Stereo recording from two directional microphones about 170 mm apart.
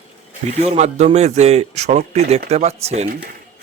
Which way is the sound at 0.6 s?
40° right (ahead or behind).